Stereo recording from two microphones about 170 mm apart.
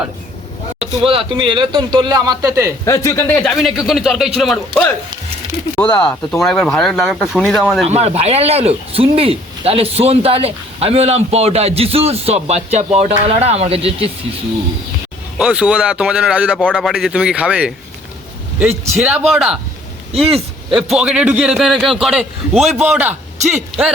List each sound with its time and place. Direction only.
0.8 s speech: 30° right (ahead or behind)
2.8 s a man's voice: 20° left (ahead or behind); by 7.9 s centre (ahead or behind)
7.9 s speech: 40° right (ahead or behind)
15.4 s a man's voice: 5° right (ahead or behind)
16.6 s a man's voice: 5° left (ahead or behind)
19.3 s a man's voice: 5° right (ahead or behind)
20.1 s speech: 35° right (ahead or behind)
20.7 s a man's voice: centre (ahead or behind)